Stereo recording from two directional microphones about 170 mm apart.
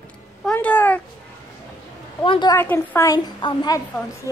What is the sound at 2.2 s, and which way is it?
Speech, 25° left (ahead or behind).